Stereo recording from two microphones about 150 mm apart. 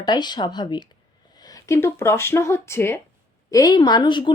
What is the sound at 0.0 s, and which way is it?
A woman's voice, 30° left (ahead or behind).